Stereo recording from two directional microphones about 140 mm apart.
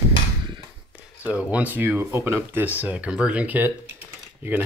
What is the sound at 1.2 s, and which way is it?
Speech, 10° right (ahead or behind).